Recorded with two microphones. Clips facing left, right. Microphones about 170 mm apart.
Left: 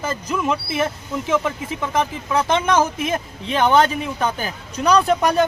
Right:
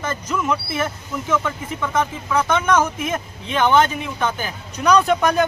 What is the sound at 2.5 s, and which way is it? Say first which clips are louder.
Speech: left 1 dB; 30° left (ahead or behind).